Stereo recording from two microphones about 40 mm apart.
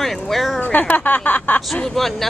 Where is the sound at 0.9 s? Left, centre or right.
Left.